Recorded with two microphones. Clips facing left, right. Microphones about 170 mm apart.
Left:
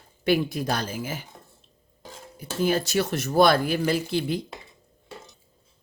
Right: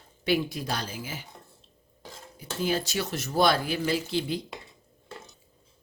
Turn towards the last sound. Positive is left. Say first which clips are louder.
# left 3 dB
turn(degrees=50)  # may be behind; listen again after turning